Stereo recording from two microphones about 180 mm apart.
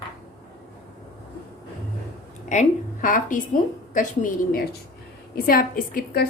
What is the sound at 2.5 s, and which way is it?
A woman's voice, 45° left (ahead or behind).